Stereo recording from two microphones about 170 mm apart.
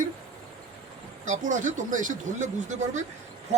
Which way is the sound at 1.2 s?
45° right (ahead or behind).